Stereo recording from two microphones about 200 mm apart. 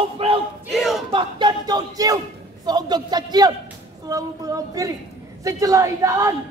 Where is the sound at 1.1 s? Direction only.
25° right (ahead or behind).